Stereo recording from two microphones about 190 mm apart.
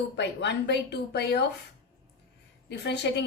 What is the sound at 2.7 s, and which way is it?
Speech, 65° left (ahead or behind).